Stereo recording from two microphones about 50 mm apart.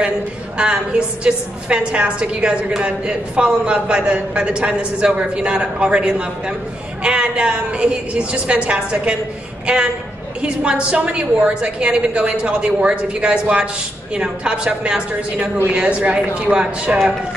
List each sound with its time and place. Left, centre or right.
0.6 s a woman's voice: centre
10.4 s a woman's voice: right